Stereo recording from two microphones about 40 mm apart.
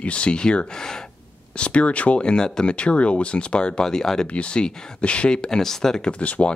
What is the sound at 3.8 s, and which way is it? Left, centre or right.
Speech, centre.